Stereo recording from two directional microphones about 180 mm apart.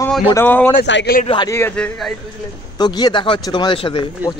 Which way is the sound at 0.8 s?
90° left.